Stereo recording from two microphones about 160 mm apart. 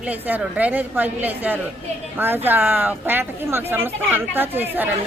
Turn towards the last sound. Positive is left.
turn(degrees=-15)  # may be behind; listen again after turning